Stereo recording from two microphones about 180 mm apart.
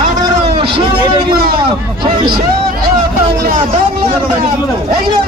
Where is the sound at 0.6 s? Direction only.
25° right (ahead or behind).